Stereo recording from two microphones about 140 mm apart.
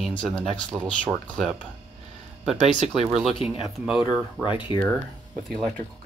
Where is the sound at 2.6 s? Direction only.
55° right (ahead or behind).